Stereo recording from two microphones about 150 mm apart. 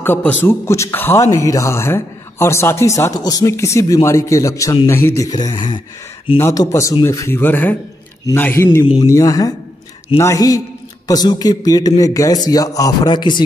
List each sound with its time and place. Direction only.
0.0 s a man's voice: 10° left (ahead or behind); by 5.8 s 35° left (ahead or behind)
6.4 s a man's voice: 20° left (ahead or behind)